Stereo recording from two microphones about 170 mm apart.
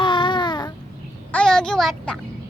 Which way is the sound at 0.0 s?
30° left (ahead or behind).